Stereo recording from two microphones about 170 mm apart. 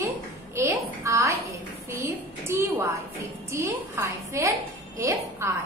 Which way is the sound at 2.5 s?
15° right (ahead or behind).